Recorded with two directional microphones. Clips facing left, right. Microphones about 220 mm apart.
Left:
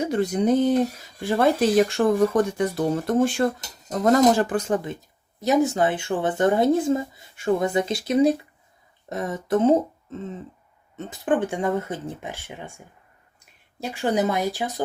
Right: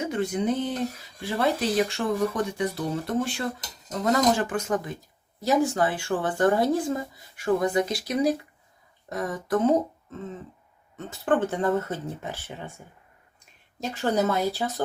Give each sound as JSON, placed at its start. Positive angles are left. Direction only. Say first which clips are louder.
{"t": 0.0, "sound": "speech", "louder": "left 4 dB", "side_deg": 35}
{"t": 10.9, "sound": "speech", "louder": "left 1 dB", "side_deg": 15}